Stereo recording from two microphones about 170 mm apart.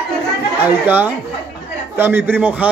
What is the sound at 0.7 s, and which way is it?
A man's voice, 10° right (ahead or behind).